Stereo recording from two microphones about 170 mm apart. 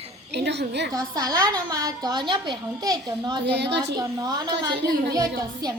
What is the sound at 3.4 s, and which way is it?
Speech, 80° right.